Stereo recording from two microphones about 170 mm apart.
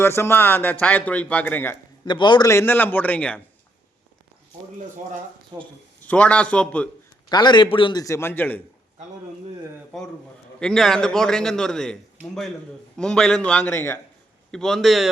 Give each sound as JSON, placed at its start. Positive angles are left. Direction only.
{"t": 0.0, "sound": "speech", "side_deg": 15}
{"t": 2.0, "sound": "speech", "side_deg": 25}
{"t": 5.5, "sound": "a man's voice", "side_deg": 5}
{"t": 7.3, "sound": "a man's voice", "side_deg": 25}
{"t": 9.9, "sound": "a man's voice", "side_deg": 5}
{"t": 14.5, "sound": "a man's voice", "side_deg": 0}